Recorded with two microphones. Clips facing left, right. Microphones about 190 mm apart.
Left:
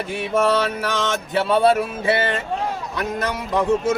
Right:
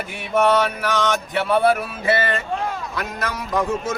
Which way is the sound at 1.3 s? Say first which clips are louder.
Left 3 dB; 30° left (ahead or behind).